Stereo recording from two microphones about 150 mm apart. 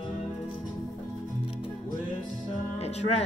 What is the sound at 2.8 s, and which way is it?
Music, 45° left (ahead or behind).